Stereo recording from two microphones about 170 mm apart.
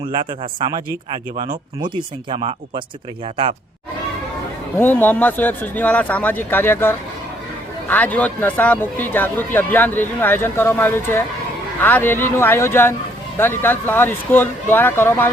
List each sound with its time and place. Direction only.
0.1 s a man's voice: 30° right (ahead or behind)
4.8 s speech: 10° left (ahead or behind)